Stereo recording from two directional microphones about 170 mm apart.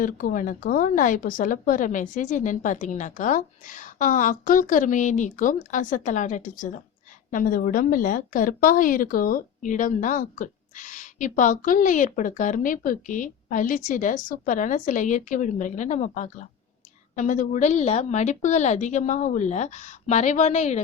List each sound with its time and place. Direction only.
0.0 s a woman's voice: 55° left (ahead or behind)